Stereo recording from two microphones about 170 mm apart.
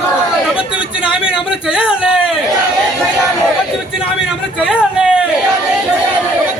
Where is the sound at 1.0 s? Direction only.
30° left (ahead or behind).